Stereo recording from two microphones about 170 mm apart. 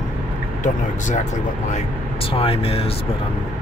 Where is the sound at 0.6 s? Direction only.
45° left (ahead or behind).